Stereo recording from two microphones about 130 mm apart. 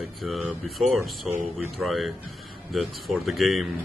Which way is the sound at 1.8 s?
Centre (ahead or behind).